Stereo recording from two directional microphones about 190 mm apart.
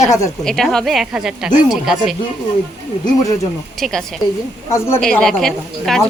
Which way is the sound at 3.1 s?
20° left (ahead or behind).